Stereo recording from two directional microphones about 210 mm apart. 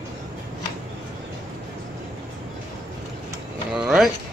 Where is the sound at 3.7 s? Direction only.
Centre (ahead or behind).